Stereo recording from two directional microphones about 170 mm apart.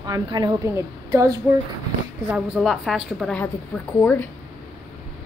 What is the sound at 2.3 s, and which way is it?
A woman's voice, centre (ahead or behind).